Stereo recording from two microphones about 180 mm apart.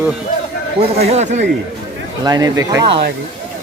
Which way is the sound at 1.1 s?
40° right (ahead or behind).